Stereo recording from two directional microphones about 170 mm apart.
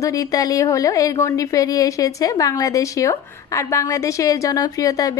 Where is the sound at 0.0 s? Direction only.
20° left (ahead or behind).